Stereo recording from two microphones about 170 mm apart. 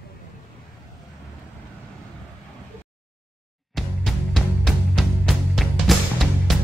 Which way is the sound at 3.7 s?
Centre (ahead or behind).